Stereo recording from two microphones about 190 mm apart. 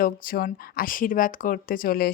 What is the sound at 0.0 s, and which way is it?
Speech, 50° left (ahead or behind).